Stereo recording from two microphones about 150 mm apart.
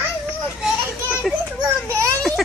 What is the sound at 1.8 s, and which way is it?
Speech, 20° right (ahead or behind).